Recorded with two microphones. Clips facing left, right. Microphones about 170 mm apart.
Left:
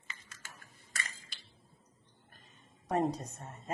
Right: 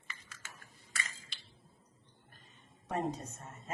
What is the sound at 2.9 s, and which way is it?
Speech, 40° left (ahead or behind).